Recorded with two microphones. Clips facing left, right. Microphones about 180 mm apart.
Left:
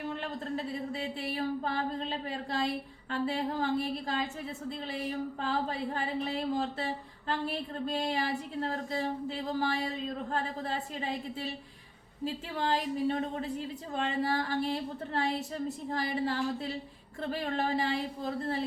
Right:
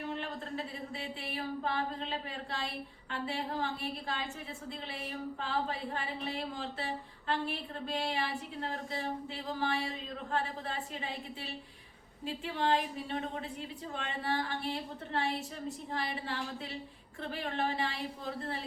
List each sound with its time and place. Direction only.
0.2 s speech: 40° left (ahead or behind)